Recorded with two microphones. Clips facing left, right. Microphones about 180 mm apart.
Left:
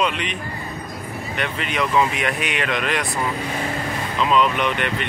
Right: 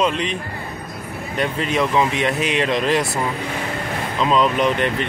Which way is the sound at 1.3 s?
35° right (ahead or behind).